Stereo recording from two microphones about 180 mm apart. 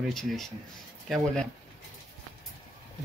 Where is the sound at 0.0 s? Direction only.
Centre (ahead or behind).